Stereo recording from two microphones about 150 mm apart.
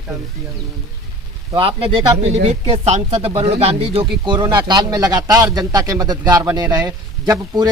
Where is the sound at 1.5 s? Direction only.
35° right (ahead or behind).